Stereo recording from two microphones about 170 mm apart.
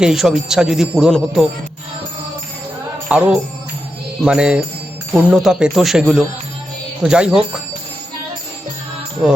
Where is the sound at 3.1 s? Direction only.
5° right (ahead or behind).